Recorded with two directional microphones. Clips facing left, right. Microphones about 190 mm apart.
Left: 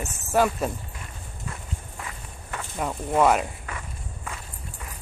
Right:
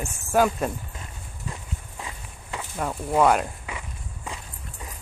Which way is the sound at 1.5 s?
15° right (ahead or behind).